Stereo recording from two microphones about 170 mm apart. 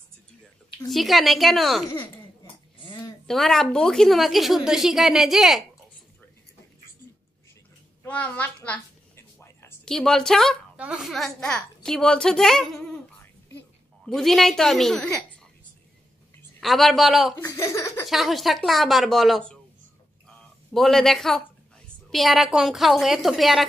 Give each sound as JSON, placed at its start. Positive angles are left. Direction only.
{"t": 0.8, "sound": "a woman's voice", "side_deg": 0}
{"t": 2.9, "sound": "a woman's voice", "side_deg": 0}
{"t": 8.0, "sound": "a sound", "side_deg": 10}
{"t": 9.8, "sound": "a woman's voice", "side_deg": 5}
{"t": 14.0, "sound": "a woman's voice", "side_deg": 0}
{"t": 16.5, "sound": "a woman's voice", "side_deg": 0}
{"t": 17.4, "sound": "speech", "side_deg": 15}
{"t": 18.0, "sound": "a woman's voice", "side_deg": 0}
{"t": 20.7, "sound": "a woman's voice", "side_deg": 0}